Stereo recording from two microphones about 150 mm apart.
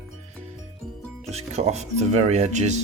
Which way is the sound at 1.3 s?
45° right (ahead or behind).